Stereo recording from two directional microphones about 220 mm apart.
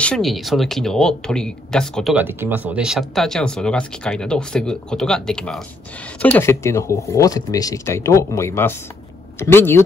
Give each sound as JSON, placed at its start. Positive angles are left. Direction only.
{"t": 0.0, "sound": "speech", "side_deg": 0}
{"t": 2.1, "sound": "speech", "side_deg": -10}